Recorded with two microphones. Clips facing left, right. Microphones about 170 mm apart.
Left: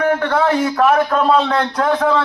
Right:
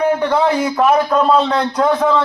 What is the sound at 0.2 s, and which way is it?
A man's voice, 10° right (ahead or behind).